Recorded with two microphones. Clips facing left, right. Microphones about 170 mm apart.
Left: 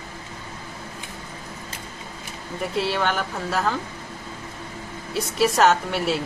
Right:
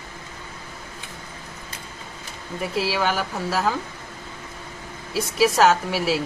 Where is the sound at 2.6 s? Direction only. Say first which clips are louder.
Even; 5° right (ahead or behind).